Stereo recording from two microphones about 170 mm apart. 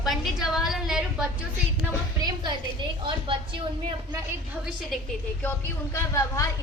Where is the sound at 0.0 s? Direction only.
Centre (ahead or behind).